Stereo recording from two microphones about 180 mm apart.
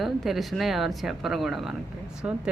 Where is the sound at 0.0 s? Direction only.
Centre (ahead or behind).